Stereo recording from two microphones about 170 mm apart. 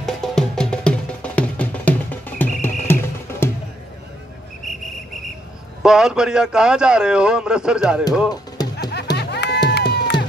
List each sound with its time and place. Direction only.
0.0 s music: centre (ahead or behind)
5.8 s a man's voice: 5° right (ahead or behind)
8.6 s music: 25° left (ahead or behind)
9.1 s music: 85° left